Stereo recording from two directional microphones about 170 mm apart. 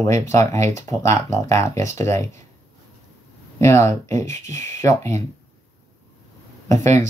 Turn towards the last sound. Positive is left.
turn(degrees=15)  # may be behind; listen again after turning